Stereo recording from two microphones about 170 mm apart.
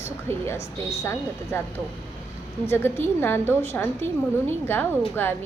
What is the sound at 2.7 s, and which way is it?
A woman's voice, 15° left (ahead or behind).